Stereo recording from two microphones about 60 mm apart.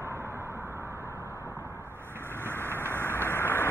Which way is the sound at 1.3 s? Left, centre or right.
Left.